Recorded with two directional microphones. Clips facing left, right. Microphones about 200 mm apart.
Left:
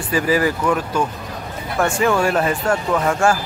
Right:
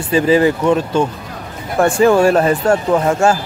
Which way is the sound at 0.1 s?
25° right (ahead or behind).